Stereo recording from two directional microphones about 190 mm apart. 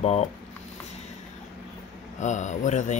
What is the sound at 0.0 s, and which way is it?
Speech, 35° left (ahead or behind).